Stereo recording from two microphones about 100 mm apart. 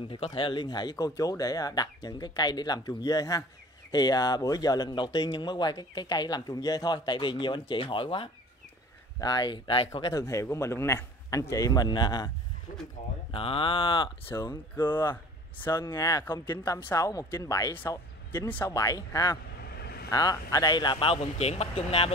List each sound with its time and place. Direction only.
0.1 s speech: 60° left (ahead or behind)
9.2 s speech: 45° left (ahead or behind)
10.1 s a man's voice: 30° left (ahead or behind)
13.3 s speech: 65° left (ahead or behind)
14.3 s a man's voice: 40° left (ahead or behind)
14.8 s speech: 25° left (ahead or behind)
15.7 s a man's voice: 35° left (ahead or behind)
21.1 s speech: 90° left